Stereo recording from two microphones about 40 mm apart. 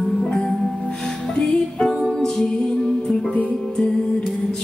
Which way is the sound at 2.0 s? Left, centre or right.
Centre.